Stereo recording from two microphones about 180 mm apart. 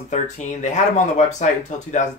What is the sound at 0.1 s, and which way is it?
Speech, 40° left (ahead or behind).